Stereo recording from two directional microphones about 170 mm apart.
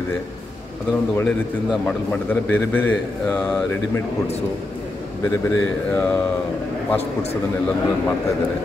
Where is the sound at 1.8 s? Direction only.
10° left (ahead or behind).